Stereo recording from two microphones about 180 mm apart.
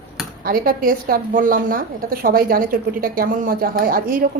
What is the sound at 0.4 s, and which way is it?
A woman's voice, 50° right (ahead or behind).